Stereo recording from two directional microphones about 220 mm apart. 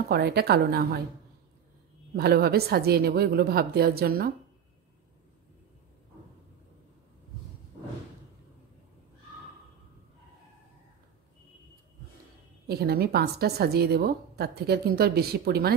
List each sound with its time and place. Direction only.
0.1 s a woman's voice: 45° right (ahead or behind)
2.1 s a woman's voice: 45° right (ahead or behind)
12.6 s a woman's voice: 45° right (ahead or behind)